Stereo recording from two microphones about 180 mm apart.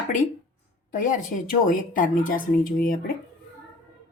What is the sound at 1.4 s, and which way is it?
Speech, 50° left (ahead or behind).